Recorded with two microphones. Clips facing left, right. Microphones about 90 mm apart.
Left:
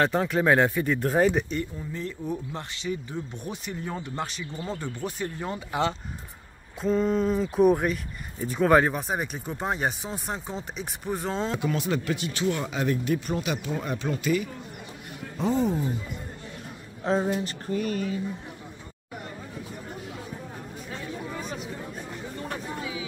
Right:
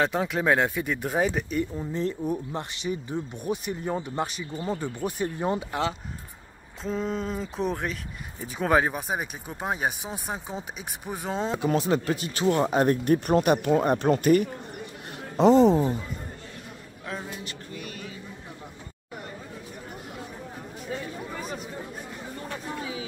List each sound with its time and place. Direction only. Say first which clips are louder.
0.0 s speech: left 2 dB; centre (ahead or behind)
1.8 s speech: right 5 dB; 30° right (ahead or behind)
2.2 s speech: right 3 dB; 15° right (ahead or behind)
11.6 s speech: right 3 dB; 35° right (ahead or behind); by 14.5 s 55° right (ahead or behind)
15.3 s speech: right 8 dB; 80° right
17.0 s speech: left 11 dB; 30° left (ahead or behind)
17.3 s speech: left 10 dB; 40° left (ahead or behind)